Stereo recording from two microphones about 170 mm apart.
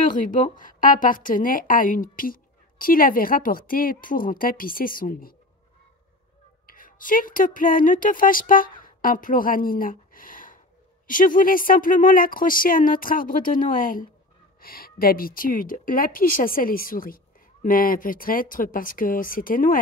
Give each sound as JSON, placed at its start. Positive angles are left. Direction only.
{"t": 0.1, "sound": "a woman's voice", "side_deg": 50}
{"t": 6.6, "sound": "speech", "side_deg": 55}